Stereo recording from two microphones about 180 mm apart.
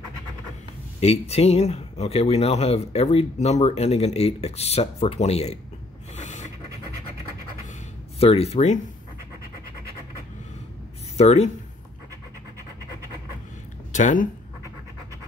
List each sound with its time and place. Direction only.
1.0 s speech: 35° left (ahead or behind)
6.1 s a sound: 40° left (ahead or behind)
8.2 s speech: 35° left (ahead or behind)
11.1 s speech: 40° left (ahead or behind)
13.9 s speech: 45° left (ahead or behind)